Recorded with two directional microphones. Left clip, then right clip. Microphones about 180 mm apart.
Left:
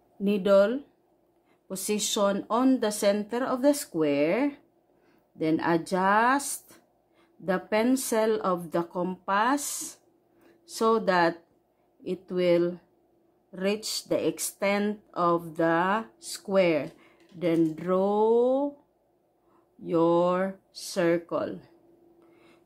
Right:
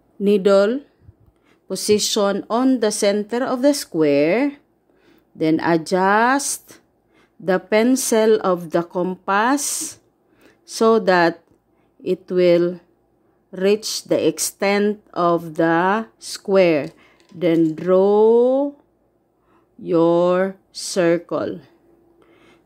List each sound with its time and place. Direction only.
0.2 s a woman's voice: 35° right (ahead or behind)
19.8 s a woman's voice: 30° right (ahead or behind)